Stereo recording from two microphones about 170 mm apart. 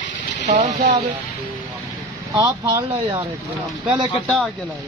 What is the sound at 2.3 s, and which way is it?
Speech, 20° right (ahead or behind).